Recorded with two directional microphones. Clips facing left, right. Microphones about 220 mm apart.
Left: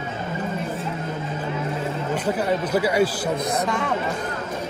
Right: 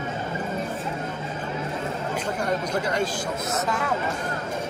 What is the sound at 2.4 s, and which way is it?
Speech, 5° left (ahead or behind).